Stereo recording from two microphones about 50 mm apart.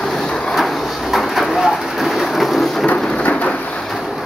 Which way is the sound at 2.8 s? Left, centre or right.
Left.